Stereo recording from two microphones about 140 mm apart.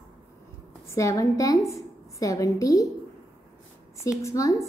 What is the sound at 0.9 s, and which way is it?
A woman's voice, 25° left (ahead or behind).